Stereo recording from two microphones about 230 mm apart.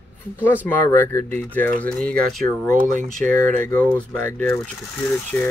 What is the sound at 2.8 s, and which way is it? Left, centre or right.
Speech, right.